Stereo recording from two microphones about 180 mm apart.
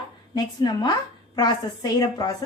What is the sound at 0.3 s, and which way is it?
A woman's voice, 25° left (ahead or behind).